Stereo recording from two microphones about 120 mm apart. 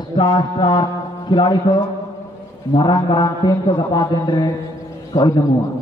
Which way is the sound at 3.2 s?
40° left (ahead or behind).